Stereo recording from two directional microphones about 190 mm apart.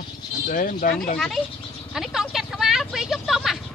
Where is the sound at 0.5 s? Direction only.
45° left (ahead or behind).